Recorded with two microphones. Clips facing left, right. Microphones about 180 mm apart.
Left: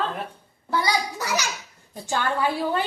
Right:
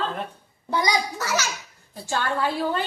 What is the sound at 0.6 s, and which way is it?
Speech, 20° right (ahead or behind).